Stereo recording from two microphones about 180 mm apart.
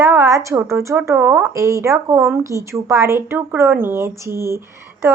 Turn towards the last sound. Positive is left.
turn(degrees=-15)  # may be behind; listen again after turning